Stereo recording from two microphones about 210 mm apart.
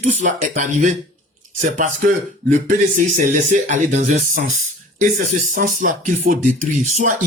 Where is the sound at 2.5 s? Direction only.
40° right (ahead or behind).